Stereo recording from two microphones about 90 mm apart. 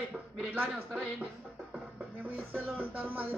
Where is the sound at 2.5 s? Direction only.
20° right (ahead or behind).